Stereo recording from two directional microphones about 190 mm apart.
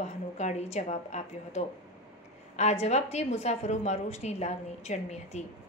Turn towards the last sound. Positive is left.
turn(degrees=35)  # may be behind; listen again after turning